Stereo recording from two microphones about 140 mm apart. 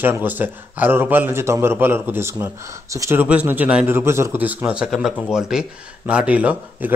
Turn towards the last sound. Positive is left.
turn(degrees=-10)  # may be behind; listen again after turning